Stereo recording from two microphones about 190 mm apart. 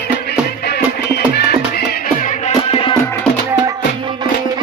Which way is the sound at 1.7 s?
40° left (ahead or behind).